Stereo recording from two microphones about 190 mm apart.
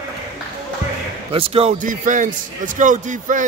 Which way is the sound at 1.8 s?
45° right (ahead or behind).